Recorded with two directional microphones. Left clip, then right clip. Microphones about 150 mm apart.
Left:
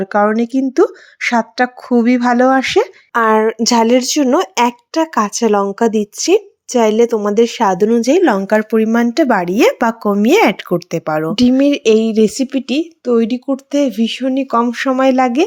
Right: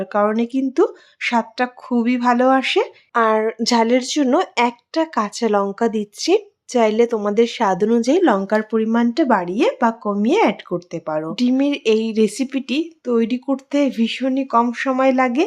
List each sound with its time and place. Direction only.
0.0 s speech: 30° left (ahead or behind)
14.4 s speech: 30° left (ahead or behind)